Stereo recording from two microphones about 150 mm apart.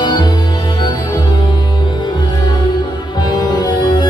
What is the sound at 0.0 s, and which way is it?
Music, 25° left (ahead or behind).